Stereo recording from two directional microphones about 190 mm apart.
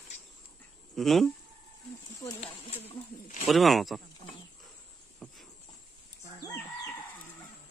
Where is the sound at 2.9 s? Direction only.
40° left (ahead or behind).